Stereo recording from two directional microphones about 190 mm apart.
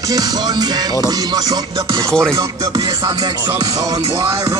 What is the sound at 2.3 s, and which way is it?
Music, 20° right (ahead or behind).